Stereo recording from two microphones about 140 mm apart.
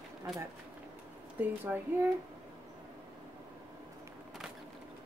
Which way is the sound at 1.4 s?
15° right (ahead or behind).